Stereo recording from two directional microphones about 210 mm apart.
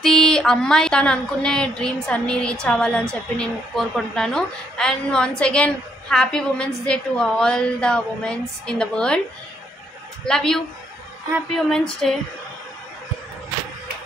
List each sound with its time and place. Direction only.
0.0 s a woman's voice: 5° left (ahead or behind)
10.2 s a woman's voice: 5° left (ahead or behind)